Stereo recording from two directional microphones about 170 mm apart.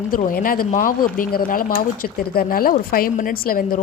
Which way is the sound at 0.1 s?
55° left (ahead or behind).